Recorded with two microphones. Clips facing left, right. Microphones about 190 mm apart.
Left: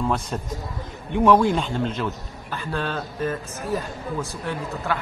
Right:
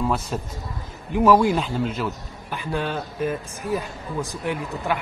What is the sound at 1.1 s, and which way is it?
A man's voice, 5° right (ahead or behind).